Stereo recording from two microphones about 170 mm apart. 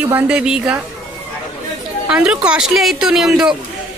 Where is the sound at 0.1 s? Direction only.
5° right (ahead or behind).